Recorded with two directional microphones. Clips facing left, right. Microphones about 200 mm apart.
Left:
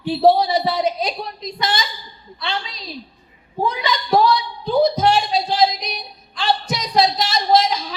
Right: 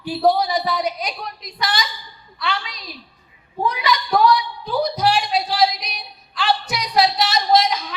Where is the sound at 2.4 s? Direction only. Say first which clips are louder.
Even; 25° left (ahead or behind).